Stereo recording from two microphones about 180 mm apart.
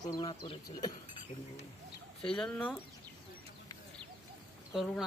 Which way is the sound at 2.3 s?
5° left (ahead or behind).